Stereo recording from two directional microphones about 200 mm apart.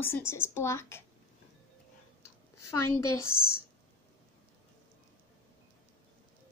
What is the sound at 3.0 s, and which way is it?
Speech, 90° left.